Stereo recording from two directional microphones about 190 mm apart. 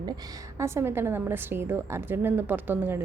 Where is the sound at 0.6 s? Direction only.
15° right (ahead or behind).